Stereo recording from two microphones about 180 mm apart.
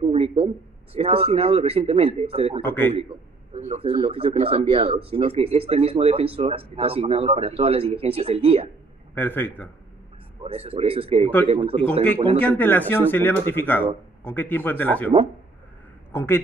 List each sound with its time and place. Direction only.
0.0 s a sound: 35° right (ahead or behind)
0.9 s speech: 30° right (ahead or behind)
2.6 s speech: 10° left (ahead or behind)
3.5 s speech: 35° right (ahead or behind)
9.1 s speech: 10° left (ahead or behind)
10.4 s speech: 30° right (ahead or behind)
12.4 s a man's voice: 10° left (ahead or behind)